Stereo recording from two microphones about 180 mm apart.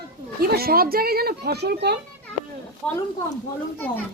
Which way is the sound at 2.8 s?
5° left (ahead or behind).